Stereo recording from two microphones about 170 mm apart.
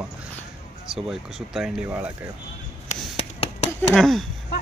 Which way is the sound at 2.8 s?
40° left (ahead or behind).